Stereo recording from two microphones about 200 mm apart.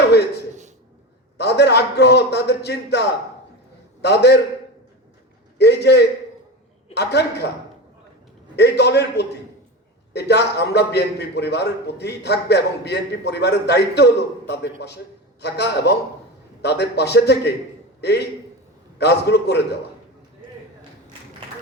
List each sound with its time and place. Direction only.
1.4 s a man's voice: 55° left (ahead or behind)
5.5 s a man's voice: 55° left (ahead or behind)
8.5 s a man's voice: 55° left (ahead or behind)